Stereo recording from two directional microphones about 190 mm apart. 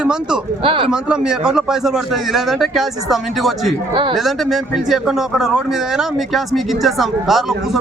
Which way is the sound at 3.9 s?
25° right (ahead or behind).